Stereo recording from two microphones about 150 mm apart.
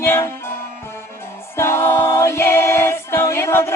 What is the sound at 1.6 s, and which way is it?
Choir, 15° left (ahead or behind).